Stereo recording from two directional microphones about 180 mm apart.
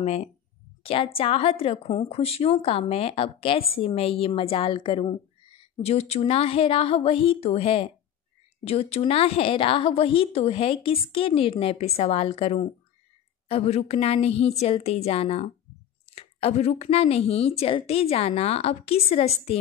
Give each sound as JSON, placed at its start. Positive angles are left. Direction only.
{"t": 0.0, "sound": "speech", "side_deg": 35}